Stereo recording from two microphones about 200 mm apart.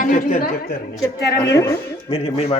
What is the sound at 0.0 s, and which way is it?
A woman's voice, 40° left (ahead or behind).